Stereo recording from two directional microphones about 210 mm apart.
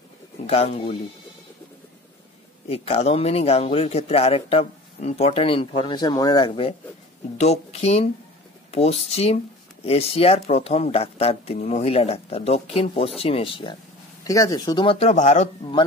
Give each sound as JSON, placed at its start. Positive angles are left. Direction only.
{"t": 0.5, "sound": "speech", "side_deg": 30}
{"t": 2.7, "sound": "speech", "side_deg": 30}